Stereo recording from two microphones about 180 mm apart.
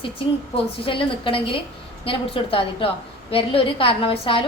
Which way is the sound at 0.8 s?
30° left (ahead or behind).